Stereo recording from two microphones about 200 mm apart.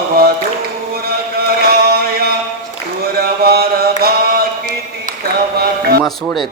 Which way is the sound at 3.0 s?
50° right (ahead or behind).